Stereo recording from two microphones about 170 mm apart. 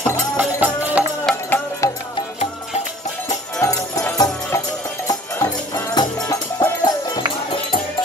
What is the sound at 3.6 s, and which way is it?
Music, 20° left (ahead or behind).